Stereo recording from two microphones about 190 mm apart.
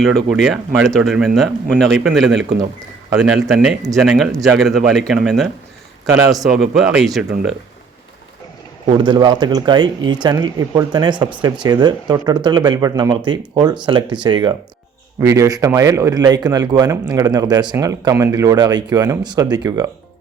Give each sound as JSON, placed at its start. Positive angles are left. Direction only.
{"t": 0.0, "sound": "speech", "side_deg": 0}
{"t": 4.3, "sound": "a man's voice", "side_deg": -15}
{"t": 4.5, "sound": "speech", "side_deg": 0}
{"t": 9.0, "sound": "speech", "side_deg": -25}